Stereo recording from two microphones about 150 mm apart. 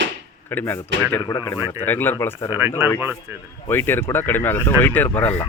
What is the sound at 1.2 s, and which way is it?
Speech, 25° left (ahead or behind).